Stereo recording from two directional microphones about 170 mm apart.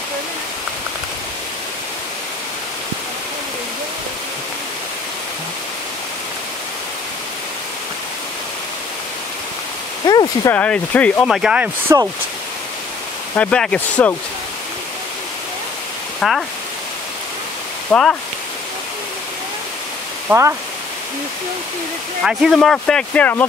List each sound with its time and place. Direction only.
10.0 s a sound: 25° left (ahead or behind)
10.5 s speech: 10° left (ahead or behind); by 12.0 s 5° right (ahead or behind)
13.4 s speech: 5° left (ahead or behind)
16.2 s speech: centre (ahead or behind)
17.9 s speech: 10° left (ahead or behind)
20.2 s speech: 15° right (ahead or behind)
22.2 s speech: centre (ahead or behind)